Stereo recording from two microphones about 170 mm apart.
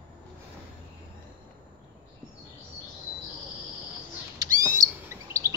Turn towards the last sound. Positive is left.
turn(degrees=-15)  # may be behind; listen again after turning